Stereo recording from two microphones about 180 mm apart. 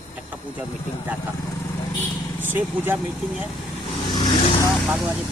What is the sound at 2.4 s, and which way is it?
Speech, 10° right (ahead or behind).